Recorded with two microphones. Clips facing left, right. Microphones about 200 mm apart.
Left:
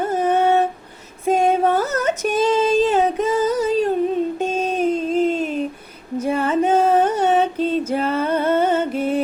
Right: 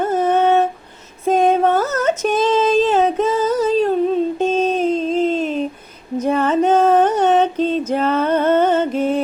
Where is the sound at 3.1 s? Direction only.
15° left (ahead or behind).